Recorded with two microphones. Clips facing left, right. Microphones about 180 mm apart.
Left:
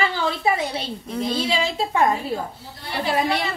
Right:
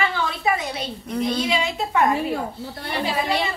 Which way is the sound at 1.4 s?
30° left (ahead or behind).